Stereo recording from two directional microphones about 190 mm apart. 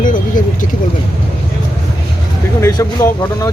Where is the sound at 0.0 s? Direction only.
45° left (ahead or behind).